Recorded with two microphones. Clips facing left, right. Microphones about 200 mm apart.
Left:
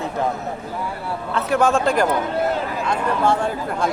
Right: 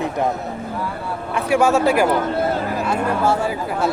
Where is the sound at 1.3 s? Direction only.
10° right (ahead or behind).